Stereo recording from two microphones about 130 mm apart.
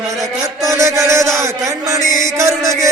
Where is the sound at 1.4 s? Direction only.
25° right (ahead or behind).